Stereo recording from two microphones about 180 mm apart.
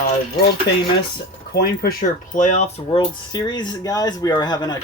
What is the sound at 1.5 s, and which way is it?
Speech, 55° left (ahead or behind).